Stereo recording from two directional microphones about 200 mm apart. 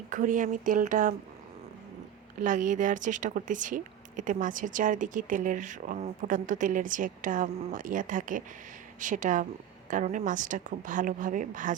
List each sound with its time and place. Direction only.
0.1 s speech: 40° right (ahead or behind)
2.4 s speech: 40° right (ahead or behind)